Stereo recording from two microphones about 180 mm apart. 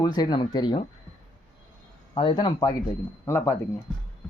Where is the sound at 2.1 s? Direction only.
25° left (ahead or behind).